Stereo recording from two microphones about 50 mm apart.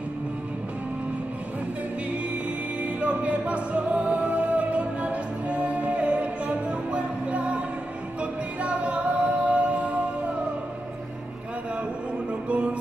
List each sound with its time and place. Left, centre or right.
2.8 s music: right
12.3 s music: right